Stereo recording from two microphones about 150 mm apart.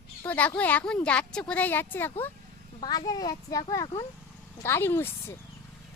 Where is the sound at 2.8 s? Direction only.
25° left (ahead or behind).